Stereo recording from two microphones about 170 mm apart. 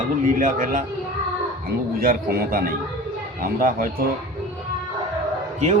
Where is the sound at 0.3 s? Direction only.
50° right (ahead or behind).